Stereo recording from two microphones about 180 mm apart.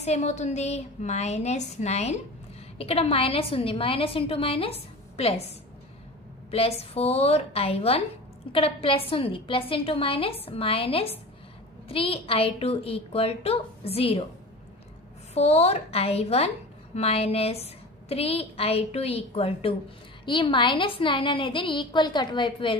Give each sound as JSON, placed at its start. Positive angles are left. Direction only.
{"t": 0.0, "sound": "a woman's voice", "side_deg": 40}
{"t": 6.5, "sound": "a woman's voice", "side_deg": 35}
{"t": 15.3, "sound": "a woman's voice", "side_deg": 35}